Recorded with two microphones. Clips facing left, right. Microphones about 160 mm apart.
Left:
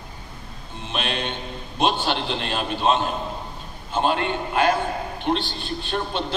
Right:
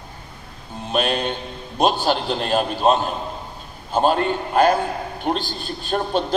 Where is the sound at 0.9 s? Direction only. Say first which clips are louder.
Right 6 dB; 40° right (ahead or behind).